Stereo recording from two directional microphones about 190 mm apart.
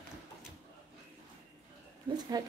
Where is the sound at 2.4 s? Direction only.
20° right (ahead or behind).